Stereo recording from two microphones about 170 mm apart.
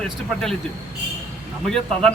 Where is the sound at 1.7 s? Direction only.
5° left (ahead or behind).